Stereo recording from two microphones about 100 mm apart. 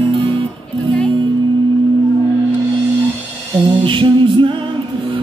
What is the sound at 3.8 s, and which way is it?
Music, 55° right (ahead or behind).